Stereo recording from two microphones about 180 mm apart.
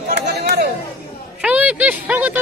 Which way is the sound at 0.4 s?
65° right (ahead or behind).